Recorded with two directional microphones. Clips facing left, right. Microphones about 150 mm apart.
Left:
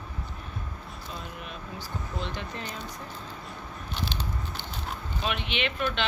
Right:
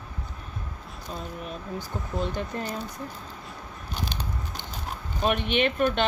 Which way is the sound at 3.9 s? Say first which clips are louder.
Right 1 dB; 45° right (ahead or behind).